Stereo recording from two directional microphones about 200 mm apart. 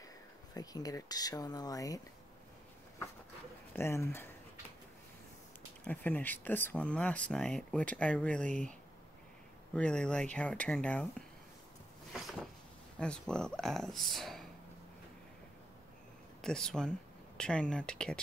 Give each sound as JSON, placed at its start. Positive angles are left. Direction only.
{"t": 0.6, "sound": "speech", "side_deg": 20}
{"t": 3.7, "sound": "speech", "side_deg": 15}
{"t": 5.9, "sound": "speech", "side_deg": 10}
{"t": 9.8, "sound": "speech", "side_deg": 5}
{"t": 12.1, "sound": "a sound", "side_deg": 0}
{"t": 13.0, "sound": "speech", "side_deg": 5}
{"t": 16.3, "sound": "speech", "side_deg": 5}